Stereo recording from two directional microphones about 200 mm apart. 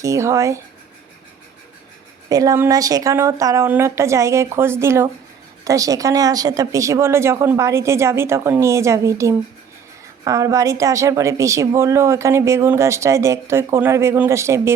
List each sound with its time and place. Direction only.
0.0 s a woman's voice: 15° right (ahead or behind)
2.3 s a woman's voice: 15° right (ahead or behind)